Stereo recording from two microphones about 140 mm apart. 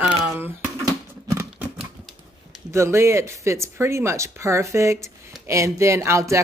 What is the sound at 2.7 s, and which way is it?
Speech, 20° right (ahead or behind).